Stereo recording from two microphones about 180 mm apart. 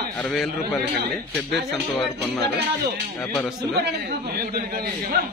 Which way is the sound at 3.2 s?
10° left (ahead or behind).